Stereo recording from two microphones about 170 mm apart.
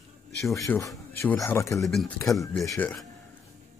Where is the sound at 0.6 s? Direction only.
20° left (ahead or behind).